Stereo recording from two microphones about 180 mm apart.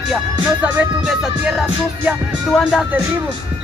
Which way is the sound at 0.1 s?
5° right (ahead or behind).